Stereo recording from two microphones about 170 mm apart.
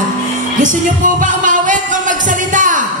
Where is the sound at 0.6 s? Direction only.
50° right (ahead or behind).